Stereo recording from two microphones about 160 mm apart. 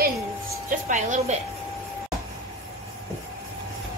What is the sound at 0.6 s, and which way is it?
Speech, 50° right (ahead or behind).